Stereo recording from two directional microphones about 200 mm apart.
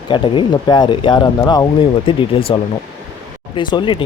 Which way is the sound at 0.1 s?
20° left (ahead or behind).